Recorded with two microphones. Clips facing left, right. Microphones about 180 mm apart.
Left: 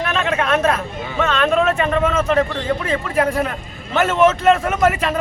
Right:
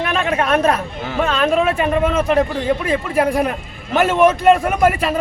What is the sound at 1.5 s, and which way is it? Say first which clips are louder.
Speech: even; 15° right (ahead or behind).